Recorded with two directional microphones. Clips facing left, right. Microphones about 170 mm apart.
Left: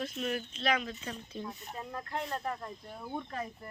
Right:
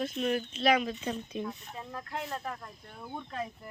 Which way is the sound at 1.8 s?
Centre (ahead or behind).